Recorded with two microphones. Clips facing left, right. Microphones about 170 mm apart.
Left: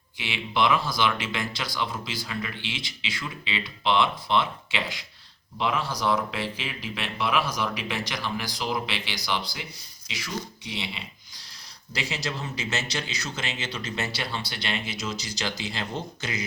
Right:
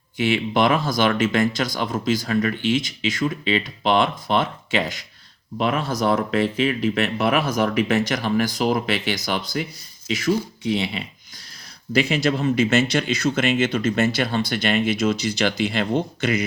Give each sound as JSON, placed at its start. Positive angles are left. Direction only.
{"t": 0.2, "sound": "speech", "side_deg": -50}